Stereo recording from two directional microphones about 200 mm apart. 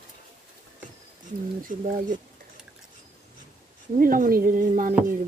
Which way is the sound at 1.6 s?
40° right (ahead or behind).